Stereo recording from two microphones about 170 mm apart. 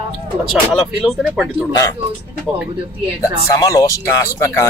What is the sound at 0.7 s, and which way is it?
Speech, centre (ahead or behind).